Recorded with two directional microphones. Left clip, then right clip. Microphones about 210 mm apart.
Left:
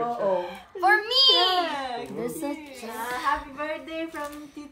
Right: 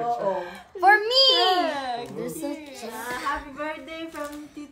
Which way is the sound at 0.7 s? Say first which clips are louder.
Right 3 dB; 45° right (ahead or behind).